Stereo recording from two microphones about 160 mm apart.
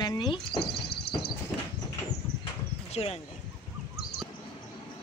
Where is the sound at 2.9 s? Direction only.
40° left (ahead or behind).